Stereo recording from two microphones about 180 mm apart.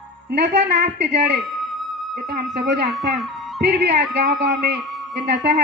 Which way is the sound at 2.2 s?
55° right (ahead or behind).